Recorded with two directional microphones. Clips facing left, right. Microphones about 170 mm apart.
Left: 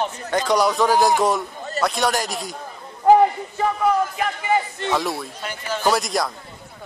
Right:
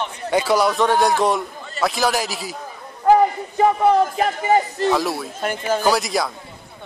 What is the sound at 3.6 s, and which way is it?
Speech, 30° right (ahead or behind).